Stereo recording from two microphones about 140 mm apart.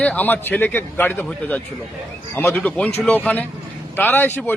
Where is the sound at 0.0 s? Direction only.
10° left (ahead or behind).